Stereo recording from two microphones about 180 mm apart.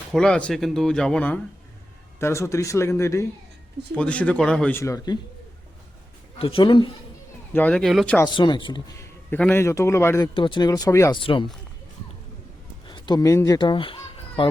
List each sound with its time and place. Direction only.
0.1 s speech: 5° left (ahead or behind)
6.4 s speech: 30° left (ahead or behind)
7.5 s speech: 5° left (ahead or behind)
8.3 s speech: 25° left (ahead or behind)
9.3 s speech: 10° left (ahead or behind)
10.3 s speech: 25° left (ahead or behind)
11.2 s speech: 30° left (ahead or behind)
12.9 s speech: 20° left (ahead or behind)